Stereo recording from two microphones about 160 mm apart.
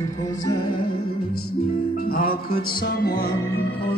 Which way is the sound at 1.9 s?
60° left (ahead or behind).